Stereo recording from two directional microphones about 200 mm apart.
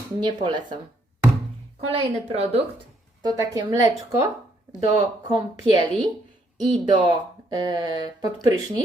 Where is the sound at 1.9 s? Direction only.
30° right (ahead or behind).